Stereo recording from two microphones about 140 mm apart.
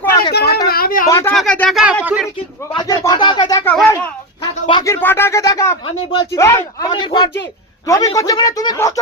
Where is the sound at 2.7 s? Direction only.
30° left (ahead or behind).